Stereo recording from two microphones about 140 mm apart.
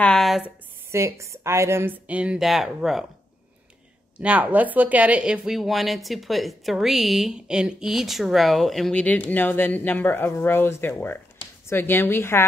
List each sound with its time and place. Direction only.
0.0 s a sound: 5° left (ahead or behind)
0.9 s speech: 20° right (ahead or behind); by 3.1 s 5° right (ahead or behind)
4.2 s a woman's voice: 10° right (ahead or behind); by 12.4 s 15° left (ahead or behind)